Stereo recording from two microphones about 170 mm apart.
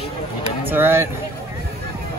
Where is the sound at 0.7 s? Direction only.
15° right (ahead or behind).